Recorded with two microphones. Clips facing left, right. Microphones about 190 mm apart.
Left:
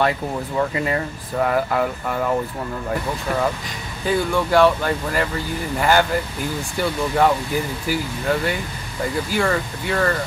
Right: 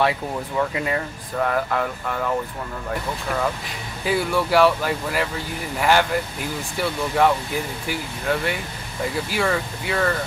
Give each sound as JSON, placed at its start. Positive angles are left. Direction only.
{"t": 0.6, "sound": "speech", "side_deg": 0}
{"t": 4.0, "sound": "speech", "side_deg": -5}